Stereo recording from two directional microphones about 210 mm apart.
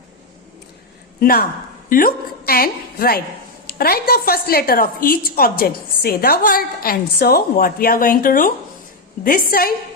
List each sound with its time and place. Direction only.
1.2 s a woman's voice: 45° left (ahead or behind)